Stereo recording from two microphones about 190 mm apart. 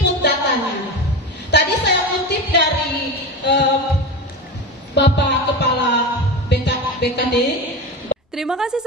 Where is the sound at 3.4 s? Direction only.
65° left (ahead or behind).